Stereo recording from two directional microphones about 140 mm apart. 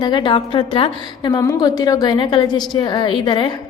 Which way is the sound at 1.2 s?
30° left (ahead or behind).